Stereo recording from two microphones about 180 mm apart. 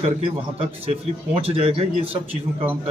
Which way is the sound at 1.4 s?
35° right (ahead or behind).